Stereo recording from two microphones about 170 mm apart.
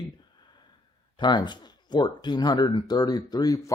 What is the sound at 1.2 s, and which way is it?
Speech, 25° left (ahead or behind).